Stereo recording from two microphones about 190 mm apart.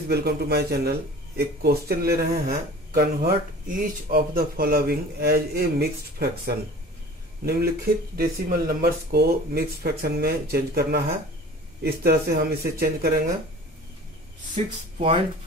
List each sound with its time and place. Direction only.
0.1 s speech: 55° right (ahead or behind)
15.0 s speech: 30° right (ahead or behind)